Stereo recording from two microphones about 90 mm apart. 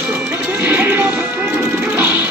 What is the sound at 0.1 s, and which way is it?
Music, 20° right (ahead or behind).